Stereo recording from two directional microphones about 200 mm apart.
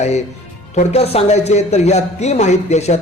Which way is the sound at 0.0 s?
35° left (ahead or behind).